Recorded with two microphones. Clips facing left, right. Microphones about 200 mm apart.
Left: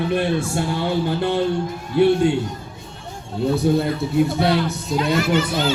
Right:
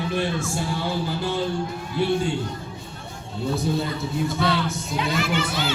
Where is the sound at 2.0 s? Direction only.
60° left (ahead or behind).